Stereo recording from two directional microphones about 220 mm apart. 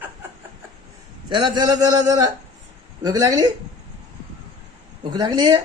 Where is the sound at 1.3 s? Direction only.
20° right (ahead or behind).